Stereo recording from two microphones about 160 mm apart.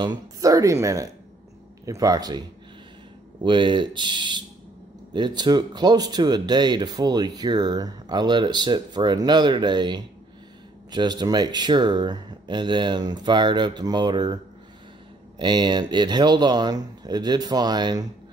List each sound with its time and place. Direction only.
0.0 s speech: 25° right (ahead or behind)
3.4 s speech: 30° right (ahead or behind)